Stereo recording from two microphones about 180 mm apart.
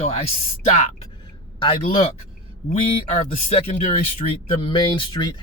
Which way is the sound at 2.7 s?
35° left (ahead or behind).